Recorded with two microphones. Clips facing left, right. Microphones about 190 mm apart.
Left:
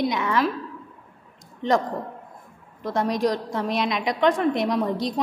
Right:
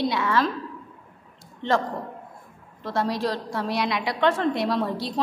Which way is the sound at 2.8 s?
15° left (ahead or behind).